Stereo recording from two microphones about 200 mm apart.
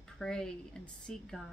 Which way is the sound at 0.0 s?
5° left (ahead or behind).